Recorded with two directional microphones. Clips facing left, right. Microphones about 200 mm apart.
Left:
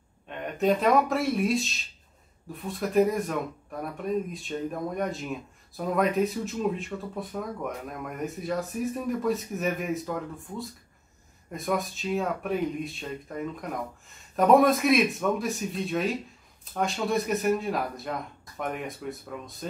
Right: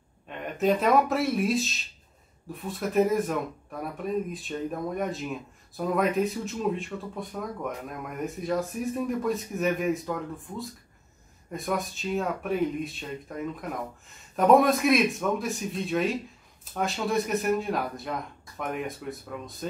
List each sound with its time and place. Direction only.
0.3 s speech: centre (ahead or behind)